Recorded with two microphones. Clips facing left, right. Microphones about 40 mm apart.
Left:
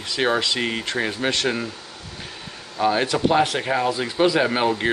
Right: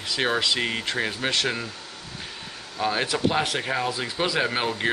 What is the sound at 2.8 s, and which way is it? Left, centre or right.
Speech, centre.